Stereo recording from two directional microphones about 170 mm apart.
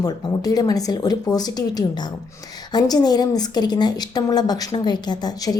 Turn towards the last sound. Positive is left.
turn(degrees=25)  # may be behind; listen again after turning